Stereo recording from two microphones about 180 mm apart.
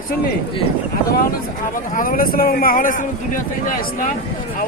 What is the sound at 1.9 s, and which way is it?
Speech, 50° left (ahead or behind).